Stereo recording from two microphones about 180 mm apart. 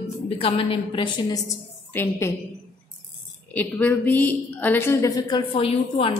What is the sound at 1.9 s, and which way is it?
Speech, 10° left (ahead or behind).